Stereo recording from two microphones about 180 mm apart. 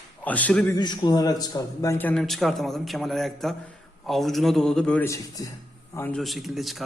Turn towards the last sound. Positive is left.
turn(degrees=0)  # may be behind; listen again after turning